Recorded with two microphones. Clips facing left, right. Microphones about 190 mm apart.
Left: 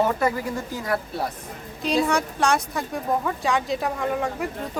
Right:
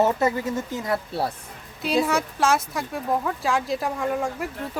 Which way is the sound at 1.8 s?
5° right (ahead or behind).